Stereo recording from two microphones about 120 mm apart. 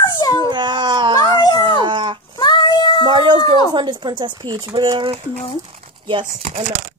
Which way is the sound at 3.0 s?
40° right (ahead or behind).